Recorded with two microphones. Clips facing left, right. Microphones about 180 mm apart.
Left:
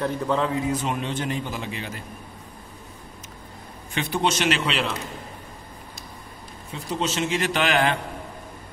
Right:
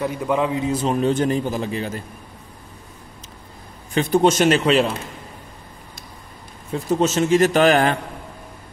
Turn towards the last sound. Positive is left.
turn(degrees=-45)  # may be behind; listen again after turning